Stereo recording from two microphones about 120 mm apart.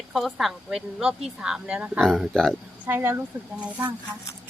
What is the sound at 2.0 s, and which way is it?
Speech, 5° left (ahead or behind).